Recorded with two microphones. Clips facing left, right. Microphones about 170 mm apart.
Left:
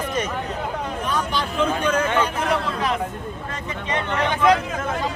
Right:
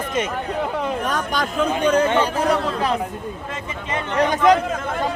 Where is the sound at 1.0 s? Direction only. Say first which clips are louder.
Right 1 dB; 45° right (ahead or behind).